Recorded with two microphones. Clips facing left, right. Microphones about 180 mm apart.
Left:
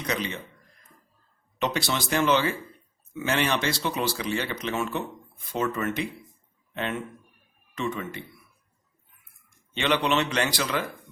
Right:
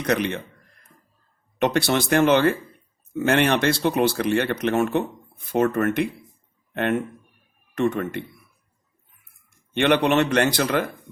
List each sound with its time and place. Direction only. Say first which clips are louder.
0.0 s speech: right 7 dB; 60° right (ahead or behind)
1.5 s speech: right 7 dB; 55° right (ahead or behind)
9.7 s speech: right 6 dB; 55° right (ahead or behind)